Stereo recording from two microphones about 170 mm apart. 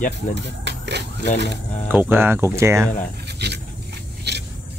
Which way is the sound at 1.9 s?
10° right (ahead or behind).